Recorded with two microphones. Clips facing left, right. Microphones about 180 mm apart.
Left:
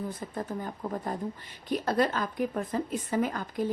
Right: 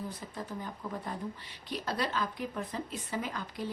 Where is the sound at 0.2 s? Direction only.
50° left (ahead or behind).